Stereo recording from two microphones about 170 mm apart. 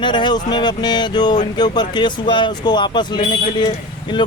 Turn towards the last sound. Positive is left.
turn(degrees=25)  # may be behind; listen again after turning